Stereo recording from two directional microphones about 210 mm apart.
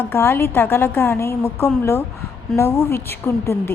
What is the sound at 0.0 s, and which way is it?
A woman's voice, 10° left (ahead or behind).